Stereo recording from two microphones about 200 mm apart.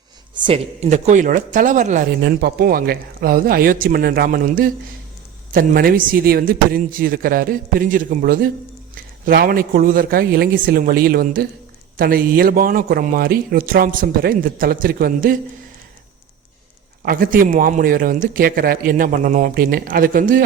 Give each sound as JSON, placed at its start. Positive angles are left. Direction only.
{"t": 0.3, "sound": "speech", "side_deg": -25}
{"t": 2.2, "sound": "a man's voice", "side_deg": -50}
{"t": 17.0, "sound": "a man's voice", "side_deg": -45}